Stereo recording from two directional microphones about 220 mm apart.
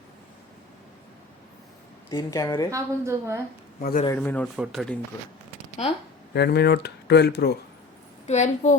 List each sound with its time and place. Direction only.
2.0 s speech: 15° left (ahead or behind)
2.6 s a woman's voice: 15° right (ahead or behind)
3.8 s a man's voice: 40° left (ahead or behind)
4.0 s speech: 10° left (ahead or behind)
4.5 s speech: centre (ahead or behind)
6.3 s speech: 45° left (ahead or behind)
8.3 s a woman's voice: 30° left (ahead or behind)